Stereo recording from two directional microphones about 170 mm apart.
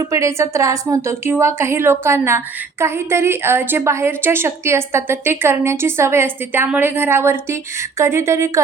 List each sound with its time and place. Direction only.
0.1 s a woman's voice: 15° right (ahead or behind)